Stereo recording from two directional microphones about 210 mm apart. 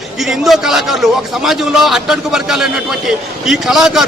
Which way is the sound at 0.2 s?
Centre (ahead or behind).